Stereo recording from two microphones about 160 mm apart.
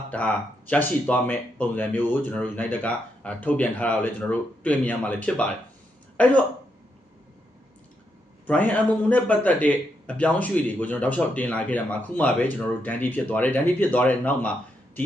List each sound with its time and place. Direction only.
0.1 s a man's voice: 10° left (ahead or behind)
8.4 s a man's voice: 10° left (ahead or behind)